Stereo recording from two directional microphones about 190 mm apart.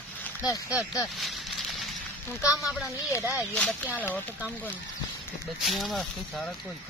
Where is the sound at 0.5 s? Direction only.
20° left (ahead or behind).